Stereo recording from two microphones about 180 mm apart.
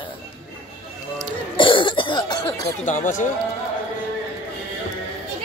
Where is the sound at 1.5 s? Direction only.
25° left (ahead or behind).